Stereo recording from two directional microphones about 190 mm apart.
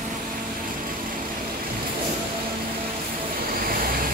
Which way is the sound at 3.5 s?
50° right (ahead or behind).